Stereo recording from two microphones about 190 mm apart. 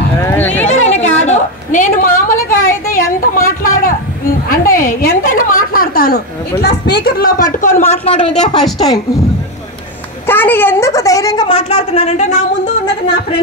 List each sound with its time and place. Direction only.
0.2 s a woman's voice: 10° left (ahead or behind)
0.7 s a sound: 35° left (ahead or behind)
4.5 s a woman's voice: 50° left (ahead or behind)
10.2 s a woman's voice: 10° left (ahead or behind); by 12.3 s 35° left (ahead or behind)